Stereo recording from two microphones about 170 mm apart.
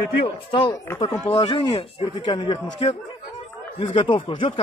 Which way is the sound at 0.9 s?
20° left (ahead or behind).